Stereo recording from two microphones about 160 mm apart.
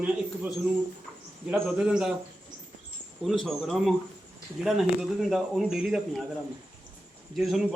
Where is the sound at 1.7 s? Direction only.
5° right (ahead or behind).